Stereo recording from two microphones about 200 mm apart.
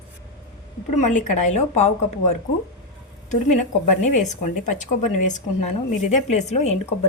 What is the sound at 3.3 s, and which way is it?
Speech, 35° left (ahead or behind).